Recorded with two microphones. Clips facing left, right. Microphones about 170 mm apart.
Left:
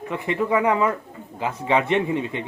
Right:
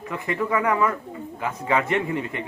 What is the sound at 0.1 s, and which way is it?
A man's voice, 20° left (ahead or behind).